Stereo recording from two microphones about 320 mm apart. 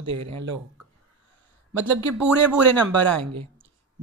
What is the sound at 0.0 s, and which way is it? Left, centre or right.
Speech, right.